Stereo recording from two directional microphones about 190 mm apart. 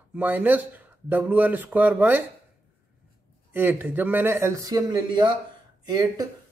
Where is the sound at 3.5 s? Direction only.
10° right (ahead or behind).